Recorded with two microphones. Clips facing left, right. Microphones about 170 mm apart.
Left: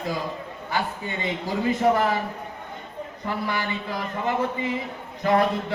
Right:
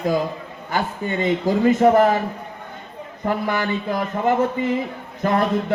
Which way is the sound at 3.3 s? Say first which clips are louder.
Right 6 dB; 50° right (ahead or behind).